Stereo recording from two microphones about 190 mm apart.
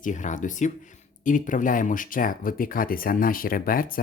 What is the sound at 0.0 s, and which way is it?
Speech, 40° left (ahead or behind).